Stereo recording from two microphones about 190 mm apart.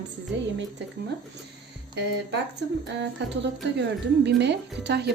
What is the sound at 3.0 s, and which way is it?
Speech, 65° right (ahead or behind).